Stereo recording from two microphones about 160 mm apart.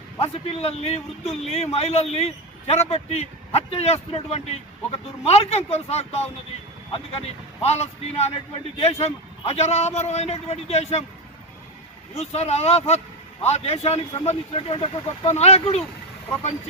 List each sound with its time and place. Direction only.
0.2 s a man's voice: 40° left (ahead or behind)
12.1 s a man's voice: 40° left (ahead or behind)